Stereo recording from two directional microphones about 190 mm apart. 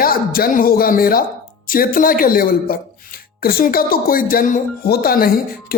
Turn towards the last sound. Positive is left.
turn(degrees=50)  # may be behind; listen again after turning